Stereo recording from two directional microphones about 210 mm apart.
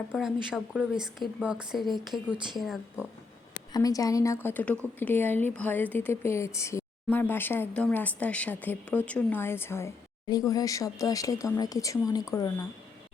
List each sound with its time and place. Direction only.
0.1 s a woman's voice: centre (ahead or behind)
3.7 s speech: 15° left (ahead or behind)